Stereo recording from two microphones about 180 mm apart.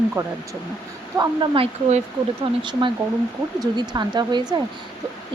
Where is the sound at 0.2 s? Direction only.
20° right (ahead or behind).